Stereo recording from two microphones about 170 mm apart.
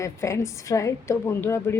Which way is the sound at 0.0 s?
15° left (ahead or behind).